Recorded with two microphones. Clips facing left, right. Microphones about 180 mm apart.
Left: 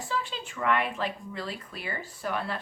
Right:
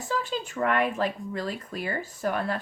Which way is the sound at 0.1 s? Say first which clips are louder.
Right 5 dB; 45° right (ahead or behind).